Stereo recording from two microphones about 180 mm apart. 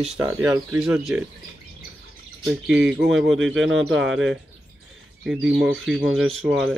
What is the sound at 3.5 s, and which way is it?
Speech, 90° right.